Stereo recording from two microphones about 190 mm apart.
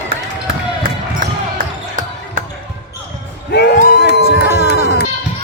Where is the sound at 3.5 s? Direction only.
60° left (ahead or behind).